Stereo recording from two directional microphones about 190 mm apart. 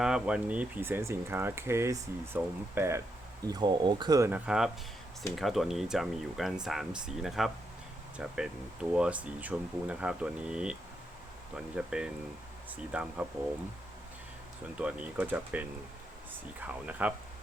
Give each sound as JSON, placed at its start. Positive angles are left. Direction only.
{"t": 0.0, "sound": "speech", "side_deg": -5}
{"t": 14.8, "sound": "speech", "side_deg": -5}